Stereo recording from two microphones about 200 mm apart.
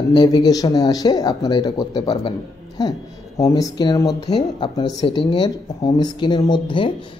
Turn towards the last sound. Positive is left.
turn(degrees=25)  # may be behind; listen again after turning